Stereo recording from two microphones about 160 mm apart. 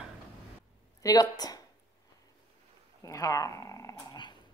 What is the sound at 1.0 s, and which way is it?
Speech, 20° left (ahead or behind).